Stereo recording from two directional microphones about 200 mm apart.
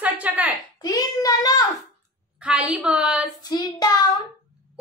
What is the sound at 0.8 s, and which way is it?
Child singing, 20° left (ahead or behind).